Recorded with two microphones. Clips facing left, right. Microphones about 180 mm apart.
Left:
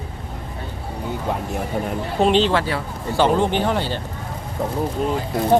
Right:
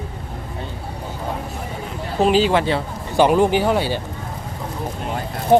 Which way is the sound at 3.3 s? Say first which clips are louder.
Right 3 dB; 10° right (ahead or behind).